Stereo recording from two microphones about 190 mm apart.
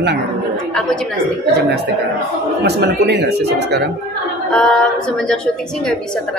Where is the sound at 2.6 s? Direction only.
65° right (ahead or behind).